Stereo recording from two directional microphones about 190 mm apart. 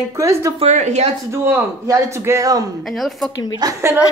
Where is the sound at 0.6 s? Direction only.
40° right (ahead or behind).